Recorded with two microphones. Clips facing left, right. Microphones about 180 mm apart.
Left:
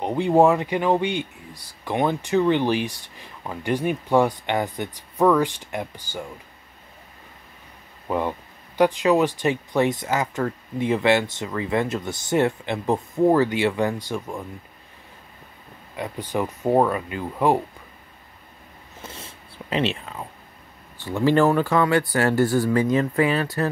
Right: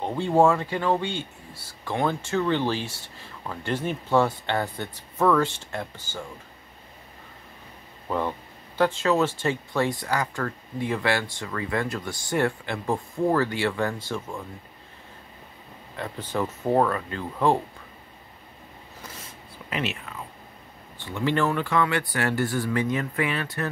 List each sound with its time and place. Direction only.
0.0 s speech: 15° left (ahead or behind)
8.1 s speech: 15° left (ahead or behind)
16.0 s speech: 15° left (ahead or behind)
18.9 s a sound: 25° left (ahead or behind)
21.0 s speech: 35° left (ahead or behind)